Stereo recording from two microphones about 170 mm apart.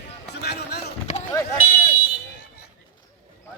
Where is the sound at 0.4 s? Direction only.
75° left (ahead or behind).